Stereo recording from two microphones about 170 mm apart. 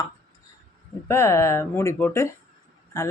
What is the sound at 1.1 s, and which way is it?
Speech, 15° left (ahead or behind).